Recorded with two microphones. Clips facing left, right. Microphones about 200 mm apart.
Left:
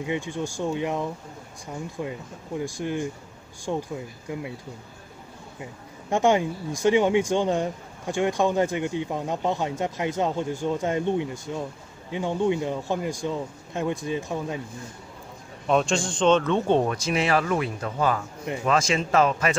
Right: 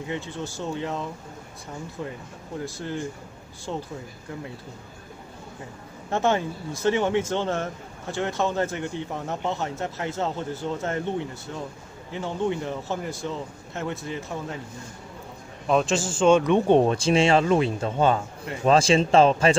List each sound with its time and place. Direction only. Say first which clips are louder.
0.0 s speech: left 3 dB; 15° left (ahead or behind)
5.6 s speech: even; 15° left (ahead or behind)
15.6 s speech: even; centre (ahead or behind)
16.9 s speech: right 4 dB; 30° right (ahead or behind)